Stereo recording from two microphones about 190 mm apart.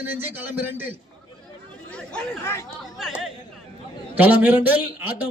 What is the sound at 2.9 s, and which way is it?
A man's voice, centre (ahead or behind).